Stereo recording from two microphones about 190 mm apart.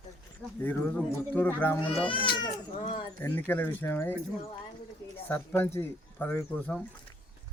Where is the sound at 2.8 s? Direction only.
35° left (ahead or behind).